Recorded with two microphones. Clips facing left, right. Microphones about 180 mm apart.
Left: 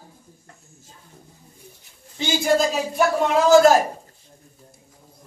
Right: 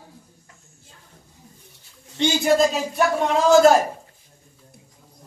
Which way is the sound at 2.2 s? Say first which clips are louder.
Right 2 dB; centre (ahead or behind).